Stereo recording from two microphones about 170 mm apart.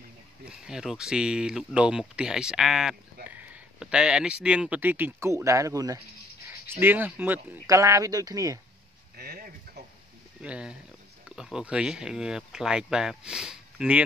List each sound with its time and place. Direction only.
0.5 s speech: 5° right (ahead or behind); by 8.5 s 20° right (ahead or behind)
9.1 s a sound: 65° right (ahead or behind)
10.4 s speech: 5° right (ahead or behind)